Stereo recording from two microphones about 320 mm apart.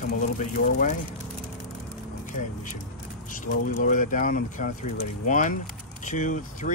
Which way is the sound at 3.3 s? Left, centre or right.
Left.